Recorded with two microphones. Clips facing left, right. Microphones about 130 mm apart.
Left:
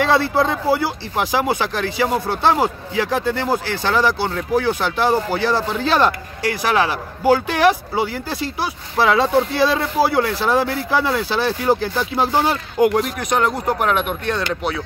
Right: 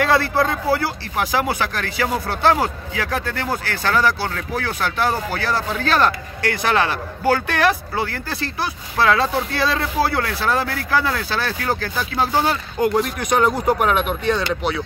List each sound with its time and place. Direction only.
0.0 s speech: 20° left (ahead or behind)
6.4 s speech: 10° left (ahead or behind)